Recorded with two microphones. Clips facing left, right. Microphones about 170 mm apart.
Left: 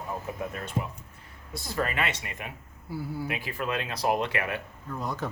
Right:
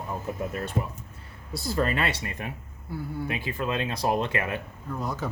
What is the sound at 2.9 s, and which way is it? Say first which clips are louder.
Speech: even; 10° left (ahead or behind).